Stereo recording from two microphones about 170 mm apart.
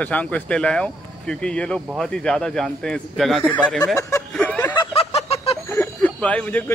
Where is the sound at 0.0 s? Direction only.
10° left (ahead or behind).